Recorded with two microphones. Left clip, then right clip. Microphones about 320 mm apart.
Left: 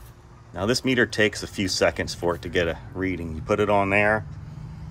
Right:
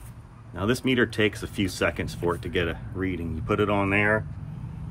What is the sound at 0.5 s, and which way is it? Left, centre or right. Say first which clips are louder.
Speech: left 2 dB; centre.